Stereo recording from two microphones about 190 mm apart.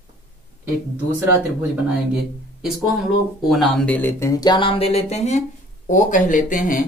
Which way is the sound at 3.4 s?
Centre (ahead or behind).